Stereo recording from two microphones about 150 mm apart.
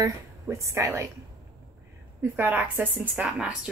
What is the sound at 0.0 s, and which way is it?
A woman's voice, 20° right (ahead or behind).